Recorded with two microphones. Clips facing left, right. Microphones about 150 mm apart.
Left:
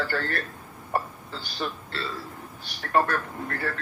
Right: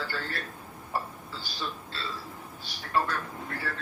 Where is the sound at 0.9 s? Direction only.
60° left (ahead or behind).